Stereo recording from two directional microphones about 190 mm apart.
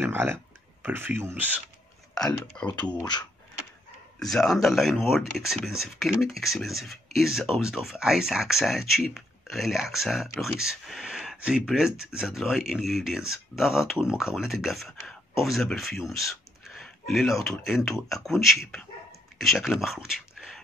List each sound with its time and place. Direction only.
0.0 s speech: 10° right (ahead or behind)
2.1 s speech: 5° left (ahead or behind)
2.6 s speech: 25° left (ahead or behind)
4.2 s speech: centre (ahead or behind)